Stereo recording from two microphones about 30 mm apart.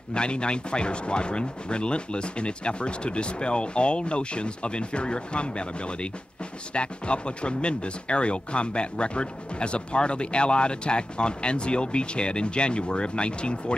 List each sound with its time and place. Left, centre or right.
0.1 s speech: left